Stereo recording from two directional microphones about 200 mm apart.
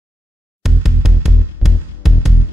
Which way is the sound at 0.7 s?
Centre (ahead or behind).